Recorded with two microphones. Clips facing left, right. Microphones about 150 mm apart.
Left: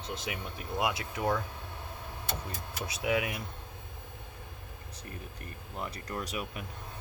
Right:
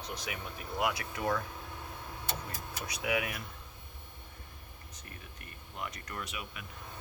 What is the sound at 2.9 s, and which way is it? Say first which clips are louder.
Speech: left 3 dB; 25° left (ahead or behind).